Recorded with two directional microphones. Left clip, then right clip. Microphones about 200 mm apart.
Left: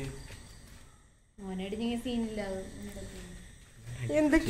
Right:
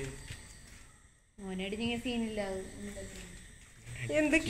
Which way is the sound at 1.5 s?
15° right (ahead or behind).